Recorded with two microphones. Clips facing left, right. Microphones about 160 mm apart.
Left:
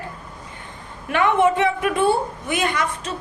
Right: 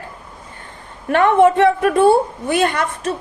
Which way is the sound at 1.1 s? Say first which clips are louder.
Right 5 dB; 55° right (ahead or behind).